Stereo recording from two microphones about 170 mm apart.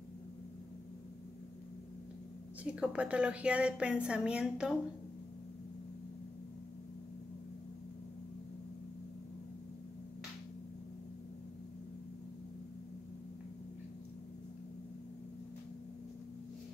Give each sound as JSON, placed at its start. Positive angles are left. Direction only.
{"t": 2.6, "sound": "a woman's voice", "side_deg": -5}